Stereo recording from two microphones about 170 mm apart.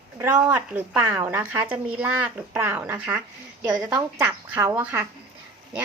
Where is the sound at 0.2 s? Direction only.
10° right (ahead or behind).